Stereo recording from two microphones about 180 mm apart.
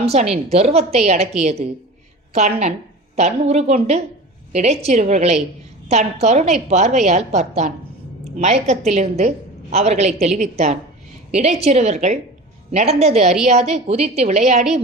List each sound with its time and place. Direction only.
0.0 s a woman's voice: 35° right (ahead or behind)